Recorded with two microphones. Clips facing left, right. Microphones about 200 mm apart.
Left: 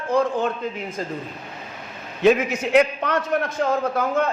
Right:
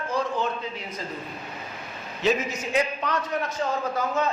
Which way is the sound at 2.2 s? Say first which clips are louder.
Left 7 dB; 60° left (ahead or behind).